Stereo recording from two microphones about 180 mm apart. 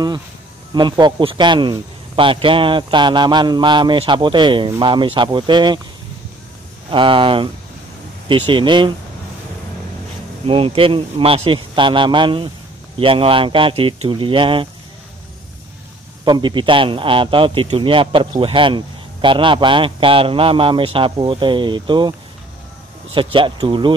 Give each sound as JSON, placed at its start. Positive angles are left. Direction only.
{"t": 0.7, "sound": "speech", "side_deg": -25}
{"t": 6.9, "sound": "speech", "side_deg": -30}
{"t": 10.4, "sound": "speech", "side_deg": -30}
{"t": 16.3, "sound": "speech", "side_deg": -25}